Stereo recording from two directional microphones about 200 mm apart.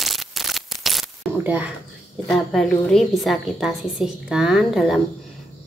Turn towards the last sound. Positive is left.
turn(degrees=0)  # may be behind; listen again after turning